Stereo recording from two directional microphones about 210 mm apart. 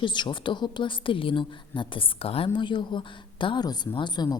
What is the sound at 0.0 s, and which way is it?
A woman's voice, 20° left (ahead or behind).